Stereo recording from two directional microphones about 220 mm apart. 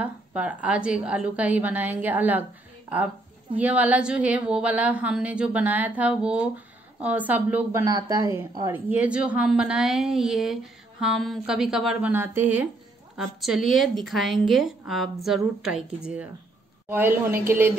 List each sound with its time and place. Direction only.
0.0 s a woman's voice: 5° right (ahead or behind)
3.5 s a woman's voice: 5° right (ahead or behind)